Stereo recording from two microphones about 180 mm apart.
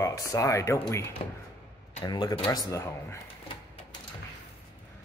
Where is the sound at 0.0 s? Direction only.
20° left (ahead or behind).